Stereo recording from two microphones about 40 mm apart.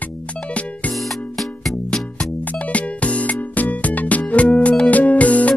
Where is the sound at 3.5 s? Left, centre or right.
Left.